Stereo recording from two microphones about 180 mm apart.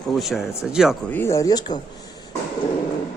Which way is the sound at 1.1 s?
10° left (ahead or behind).